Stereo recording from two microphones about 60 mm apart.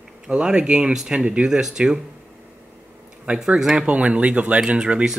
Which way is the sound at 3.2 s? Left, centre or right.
Centre.